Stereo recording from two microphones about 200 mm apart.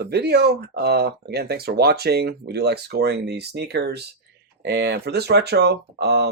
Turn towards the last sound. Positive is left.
turn(degrees=-55)  # may be behind; listen again after turning